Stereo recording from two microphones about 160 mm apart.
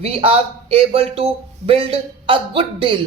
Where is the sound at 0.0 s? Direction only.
35° right (ahead or behind).